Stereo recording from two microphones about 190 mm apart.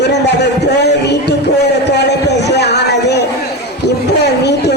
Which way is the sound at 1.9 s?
60° left (ahead or behind).